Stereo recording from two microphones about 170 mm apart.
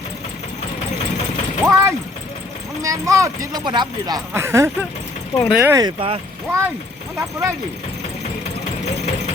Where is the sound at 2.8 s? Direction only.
20° right (ahead or behind).